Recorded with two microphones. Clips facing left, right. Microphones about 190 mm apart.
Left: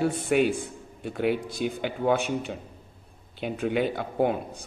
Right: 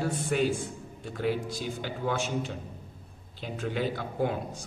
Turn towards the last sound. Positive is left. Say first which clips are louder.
# left 5 dB
turn(degrees=60)  # may be behind; listen again after turning